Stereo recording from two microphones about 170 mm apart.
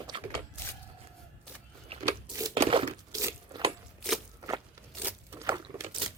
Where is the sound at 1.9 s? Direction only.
35° right (ahead or behind).